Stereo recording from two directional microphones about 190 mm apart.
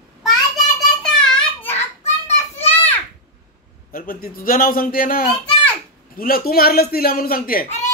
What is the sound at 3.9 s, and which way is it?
A man's voice, 50° left (ahead or behind).